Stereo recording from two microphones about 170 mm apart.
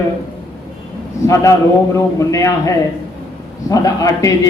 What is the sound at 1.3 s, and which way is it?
A man's voice, 20° left (ahead or behind).